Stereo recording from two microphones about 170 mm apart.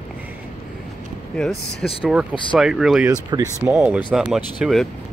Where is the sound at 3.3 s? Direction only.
25° right (ahead or behind).